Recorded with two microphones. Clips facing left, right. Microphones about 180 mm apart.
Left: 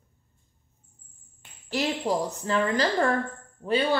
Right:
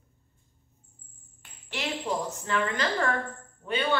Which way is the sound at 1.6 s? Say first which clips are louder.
Left 5 dB; 35° left (ahead or behind).